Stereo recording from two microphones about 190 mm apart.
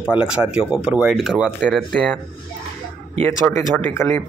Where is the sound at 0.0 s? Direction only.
5° right (ahead or behind).